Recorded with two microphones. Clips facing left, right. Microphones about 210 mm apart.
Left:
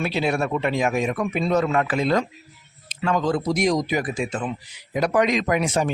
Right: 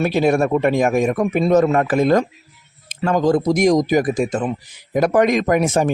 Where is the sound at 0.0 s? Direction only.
45° right (ahead or behind).